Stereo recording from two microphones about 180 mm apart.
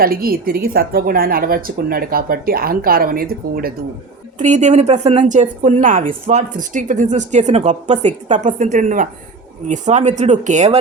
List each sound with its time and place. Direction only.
0.0 s speech: 55° right (ahead or behind)
4.4 s speech: 40° right (ahead or behind)